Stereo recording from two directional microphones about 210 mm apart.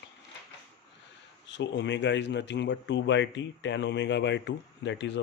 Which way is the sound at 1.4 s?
55° left (ahead or behind).